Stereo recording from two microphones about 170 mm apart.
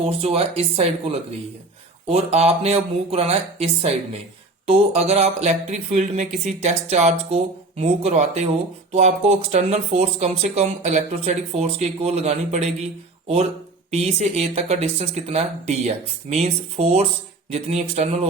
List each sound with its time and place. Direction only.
0.0 s speech: 35° right (ahead or behind)